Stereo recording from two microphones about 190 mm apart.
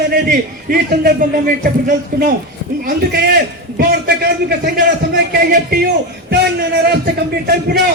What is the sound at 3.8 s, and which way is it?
A man's voice, 55° right (ahead or behind).